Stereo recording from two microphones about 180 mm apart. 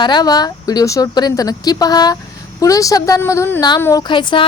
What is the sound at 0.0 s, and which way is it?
A woman's voice, 25° left (ahead or behind).